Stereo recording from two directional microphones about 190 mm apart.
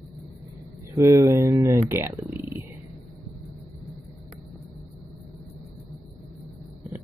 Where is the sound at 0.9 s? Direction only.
15° right (ahead or behind).